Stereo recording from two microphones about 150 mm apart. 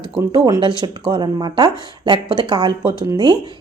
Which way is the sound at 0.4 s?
25° right (ahead or behind).